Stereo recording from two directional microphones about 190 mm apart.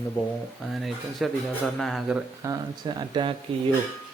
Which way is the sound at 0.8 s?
Centre (ahead or behind).